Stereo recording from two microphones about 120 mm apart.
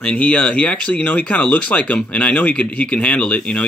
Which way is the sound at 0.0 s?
10° left (ahead or behind).